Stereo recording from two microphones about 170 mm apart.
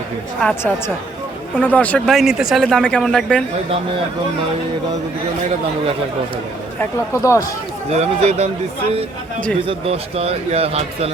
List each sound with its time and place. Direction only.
1.5 s speech: 10° left (ahead or behind)
6.7 s speech: 15° left (ahead or behind)
7.9 s a man's voice: 40° right (ahead or behind)
9.6 s a man's voice: 35° right (ahead or behind)